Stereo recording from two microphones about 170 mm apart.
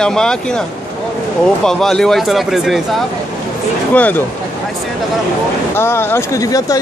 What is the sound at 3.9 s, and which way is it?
Speech, 10° left (ahead or behind).